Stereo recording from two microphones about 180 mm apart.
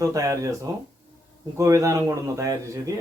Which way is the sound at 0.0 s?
15° right (ahead or behind).